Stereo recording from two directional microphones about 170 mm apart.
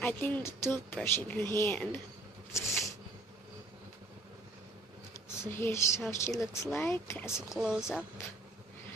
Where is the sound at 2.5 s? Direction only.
15° left (ahead or behind).